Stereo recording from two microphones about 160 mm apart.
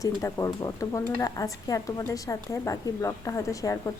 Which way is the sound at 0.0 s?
20° left (ahead or behind).